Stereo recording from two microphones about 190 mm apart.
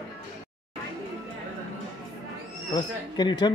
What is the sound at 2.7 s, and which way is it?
Speech, 20° left (ahead or behind).